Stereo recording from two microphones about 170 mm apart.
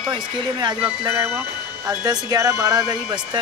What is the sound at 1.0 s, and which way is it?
Speech, 15° right (ahead or behind).